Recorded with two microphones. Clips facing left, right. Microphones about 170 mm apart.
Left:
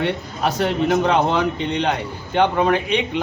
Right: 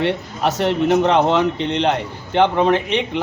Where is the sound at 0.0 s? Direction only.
Centre (ahead or behind).